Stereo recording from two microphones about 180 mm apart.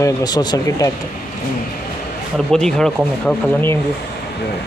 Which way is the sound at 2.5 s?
5° left (ahead or behind).